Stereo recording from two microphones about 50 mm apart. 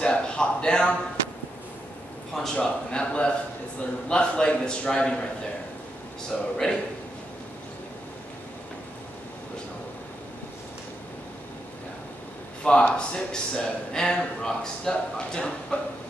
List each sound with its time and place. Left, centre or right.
0.0 s a sound: left
2.3 s speech: centre
6.3 s speech: centre
12.6 s speech: centre